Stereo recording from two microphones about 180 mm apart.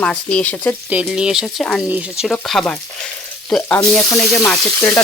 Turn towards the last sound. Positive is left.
turn(degrees=5)  # may be behind; listen again after turning